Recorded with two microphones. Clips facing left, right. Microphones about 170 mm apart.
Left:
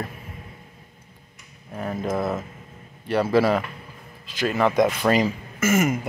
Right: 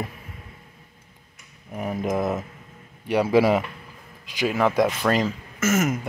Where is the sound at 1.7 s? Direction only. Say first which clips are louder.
Right 1 dB; 15° right (ahead or behind).